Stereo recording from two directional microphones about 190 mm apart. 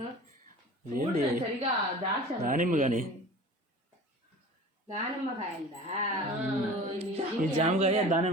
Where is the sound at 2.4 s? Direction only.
45° right (ahead or behind).